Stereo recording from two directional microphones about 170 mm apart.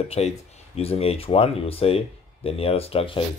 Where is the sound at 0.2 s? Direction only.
35° left (ahead or behind).